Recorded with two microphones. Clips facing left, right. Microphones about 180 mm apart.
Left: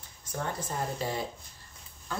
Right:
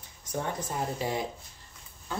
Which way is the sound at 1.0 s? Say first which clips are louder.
Right 3 dB; 15° right (ahead or behind).